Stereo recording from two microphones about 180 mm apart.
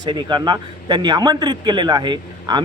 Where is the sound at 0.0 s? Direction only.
25° right (ahead or behind).